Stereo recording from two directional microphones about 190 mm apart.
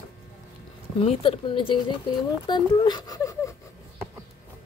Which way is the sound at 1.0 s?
30° left (ahead or behind).